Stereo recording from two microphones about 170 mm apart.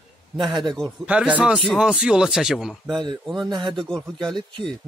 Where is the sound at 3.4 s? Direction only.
25° right (ahead or behind).